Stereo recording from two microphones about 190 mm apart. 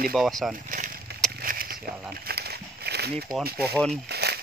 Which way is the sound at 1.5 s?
50° right (ahead or behind).